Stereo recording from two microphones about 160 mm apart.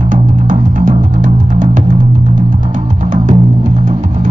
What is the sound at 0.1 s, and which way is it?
Music, 55° right (ahead or behind).